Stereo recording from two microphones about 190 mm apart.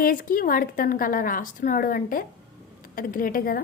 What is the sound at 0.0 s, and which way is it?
A woman's voice, 50° left (ahead or behind).